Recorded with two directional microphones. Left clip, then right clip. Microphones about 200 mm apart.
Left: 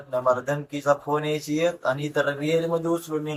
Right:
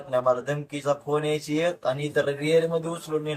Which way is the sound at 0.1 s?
5° right (ahead or behind).